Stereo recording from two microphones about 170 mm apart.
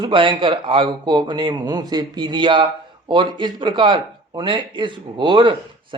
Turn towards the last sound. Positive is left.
turn(degrees=-30)  # may be behind; listen again after turning